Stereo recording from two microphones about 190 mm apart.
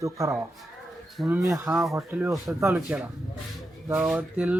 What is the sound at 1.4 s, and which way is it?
Speech, 15° right (ahead or behind).